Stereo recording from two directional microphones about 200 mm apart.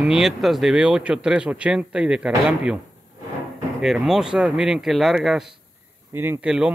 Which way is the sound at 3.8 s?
Centre (ahead or behind).